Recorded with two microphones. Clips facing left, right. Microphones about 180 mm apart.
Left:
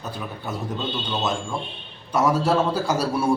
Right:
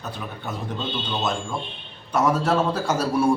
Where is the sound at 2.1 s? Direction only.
5° left (ahead or behind).